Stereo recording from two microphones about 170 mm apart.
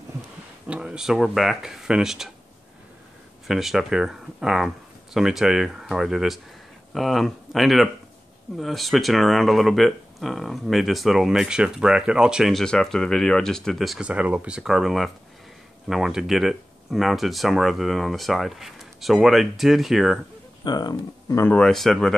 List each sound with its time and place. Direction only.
0.7 s speech: 5° right (ahead or behind)
3.4 s speech: centre (ahead or behind)
20.6 s speech: 25° left (ahead or behind)
21.5 s speech: 5° left (ahead or behind)